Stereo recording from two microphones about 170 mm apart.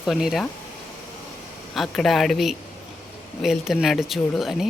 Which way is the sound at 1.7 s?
Centre (ahead or behind).